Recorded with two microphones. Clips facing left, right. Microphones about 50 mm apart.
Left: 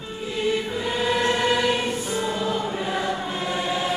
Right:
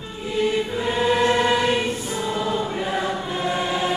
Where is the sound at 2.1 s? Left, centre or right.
Centre.